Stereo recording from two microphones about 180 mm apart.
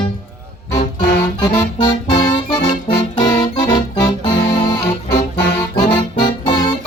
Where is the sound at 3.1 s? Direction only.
30° left (ahead or behind).